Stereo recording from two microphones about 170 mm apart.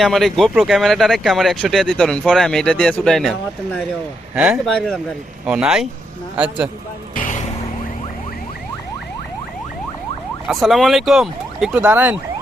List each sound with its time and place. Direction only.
0.0 s speech: centre (ahead or behind)
7.2 s vehicle: 45° left (ahead or behind)
10.4 s speech: centre (ahead or behind)